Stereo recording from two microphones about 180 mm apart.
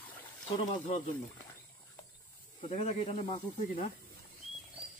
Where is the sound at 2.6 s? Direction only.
40° left (ahead or behind).